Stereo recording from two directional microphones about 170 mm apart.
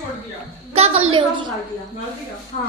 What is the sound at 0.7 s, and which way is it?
Speech, 35° right (ahead or behind).